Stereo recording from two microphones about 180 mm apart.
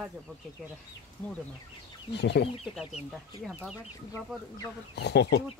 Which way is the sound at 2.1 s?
70° left (ahead or behind).